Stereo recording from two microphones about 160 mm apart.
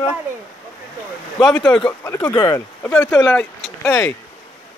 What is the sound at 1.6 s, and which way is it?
Speech, 5° left (ahead or behind).